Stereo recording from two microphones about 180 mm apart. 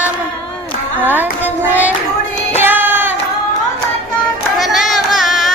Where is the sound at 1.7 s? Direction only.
10° right (ahead or behind).